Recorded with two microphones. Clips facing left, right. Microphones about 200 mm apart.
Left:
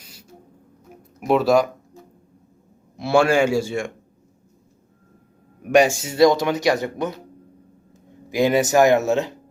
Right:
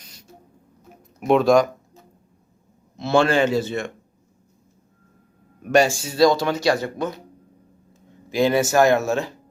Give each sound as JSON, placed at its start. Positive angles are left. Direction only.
{"t": 0.0, "sound": "beatboxing", "side_deg": 5}
{"t": 1.3, "sound": "speech", "side_deg": 5}
{"t": 2.9, "sound": "speech", "side_deg": 10}
{"t": 5.6, "sound": "speech", "side_deg": 15}
{"t": 8.3, "sound": "speech", "side_deg": 15}